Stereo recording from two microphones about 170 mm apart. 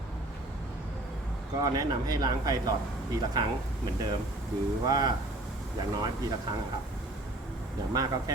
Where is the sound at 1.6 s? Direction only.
20° right (ahead or behind).